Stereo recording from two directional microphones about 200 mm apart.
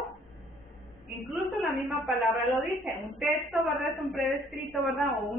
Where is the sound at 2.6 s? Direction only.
5° right (ahead or behind).